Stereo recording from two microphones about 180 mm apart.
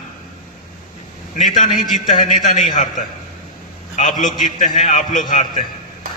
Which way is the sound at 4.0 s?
45° left (ahead or behind).